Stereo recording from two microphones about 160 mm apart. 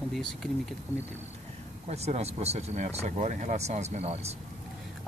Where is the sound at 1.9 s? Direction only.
40° right (ahead or behind).